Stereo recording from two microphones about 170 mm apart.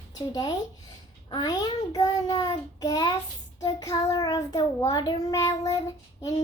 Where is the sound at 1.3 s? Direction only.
25° left (ahead or behind).